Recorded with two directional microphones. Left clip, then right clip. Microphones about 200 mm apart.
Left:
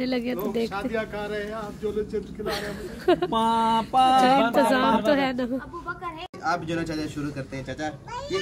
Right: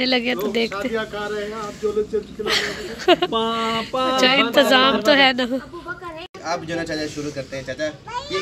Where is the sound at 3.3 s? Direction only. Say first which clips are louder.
Even; 65° left (ahead or behind).